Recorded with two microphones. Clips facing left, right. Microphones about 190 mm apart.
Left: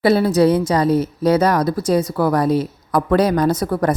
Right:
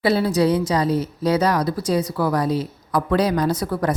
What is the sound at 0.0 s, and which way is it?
A woman's voice, 55° left (ahead or behind).